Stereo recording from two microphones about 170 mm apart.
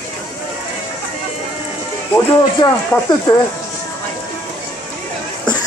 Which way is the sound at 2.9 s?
5° left (ahead or behind).